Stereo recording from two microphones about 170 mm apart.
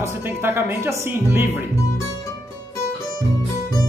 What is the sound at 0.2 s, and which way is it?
Speech, 10° right (ahead or behind).